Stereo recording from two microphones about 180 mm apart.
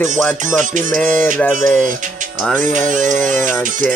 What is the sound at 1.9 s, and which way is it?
Music, 45° right (ahead or behind).